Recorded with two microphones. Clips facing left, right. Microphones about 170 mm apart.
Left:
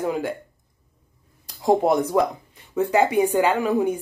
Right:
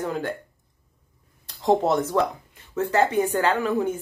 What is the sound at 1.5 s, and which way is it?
Speech, 10° left (ahead or behind).